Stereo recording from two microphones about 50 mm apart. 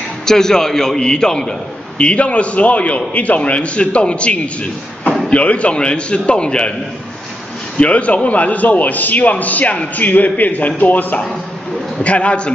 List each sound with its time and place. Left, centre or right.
0.2 s a man's voice: centre
7.7 s a man's voice: left
12.0 s a man's voice: left